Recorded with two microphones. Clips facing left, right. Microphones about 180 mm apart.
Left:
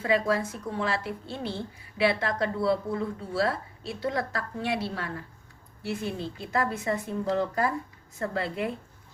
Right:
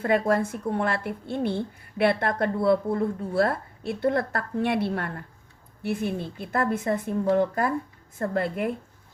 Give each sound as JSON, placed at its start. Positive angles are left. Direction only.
{"t": 0.0, "sound": "a woman's voice", "side_deg": -55}